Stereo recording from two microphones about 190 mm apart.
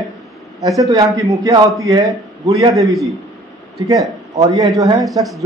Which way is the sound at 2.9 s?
Centre (ahead or behind).